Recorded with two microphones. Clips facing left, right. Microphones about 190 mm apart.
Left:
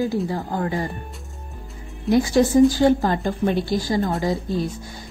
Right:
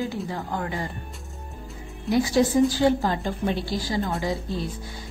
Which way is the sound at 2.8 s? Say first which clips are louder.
Left 4 dB; 45° left (ahead or behind).